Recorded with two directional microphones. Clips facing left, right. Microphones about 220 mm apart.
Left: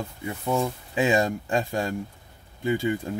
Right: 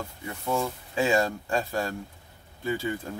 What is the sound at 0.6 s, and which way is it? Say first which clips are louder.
Speech: left 2 dB; 20° left (ahead or behind).